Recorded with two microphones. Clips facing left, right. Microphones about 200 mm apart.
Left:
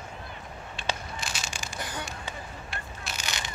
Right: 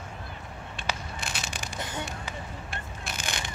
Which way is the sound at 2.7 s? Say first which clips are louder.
Right 1 dB; 55° right (ahead or behind).